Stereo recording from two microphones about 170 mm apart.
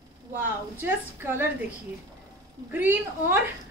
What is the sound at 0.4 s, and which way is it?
A woman's voice, 10° right (ahead or behind).